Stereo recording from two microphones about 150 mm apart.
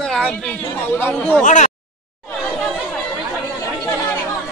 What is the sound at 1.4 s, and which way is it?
Speech, 55° left (ahead or behind).